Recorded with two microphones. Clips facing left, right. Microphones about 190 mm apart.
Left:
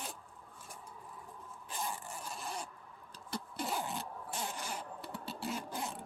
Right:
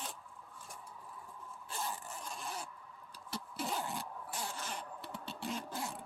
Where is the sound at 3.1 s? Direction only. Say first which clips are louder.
Left 2 dB; 5° right (ahead or behind).